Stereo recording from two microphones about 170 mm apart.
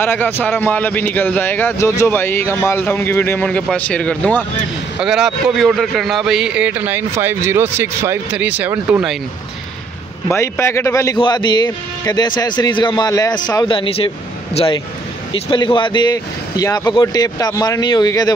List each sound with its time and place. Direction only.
0.0 s a man's voice: 10° left (ahead or behind)
5.0 s a man's voice: 5° right (ahead or behind)
10.2 s a man's voice: 15° left (ahead or behind)